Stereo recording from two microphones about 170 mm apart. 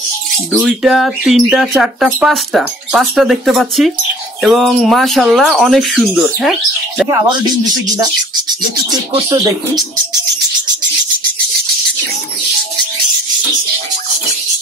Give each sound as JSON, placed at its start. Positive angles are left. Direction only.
{"t": 0.5, "sound": "speech", "side_deg": -5}
{"t": 7.1, "sound": "speech", "side_deg": -20}